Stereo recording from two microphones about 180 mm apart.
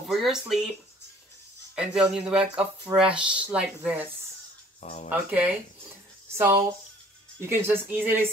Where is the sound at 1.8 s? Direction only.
5° right (ahead or behind).